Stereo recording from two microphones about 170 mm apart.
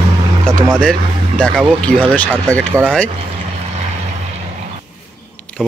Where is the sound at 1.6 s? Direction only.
10° right (ahead or behind).